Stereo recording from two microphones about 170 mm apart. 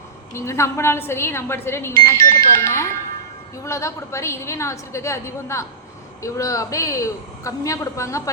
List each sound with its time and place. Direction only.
0.3 s a woman's voice: 15° left (ahead or behind)